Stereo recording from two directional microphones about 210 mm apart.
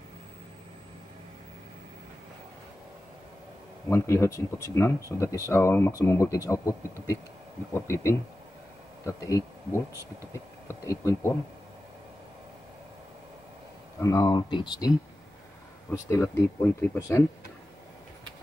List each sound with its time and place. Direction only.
3.9 s speech: 15° left (ahead or behind)
14.0 s speech: 15° left (ahead or behind)